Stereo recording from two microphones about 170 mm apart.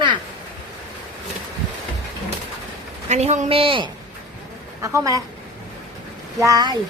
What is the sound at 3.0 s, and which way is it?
Speech, 40° right (ahead or behind).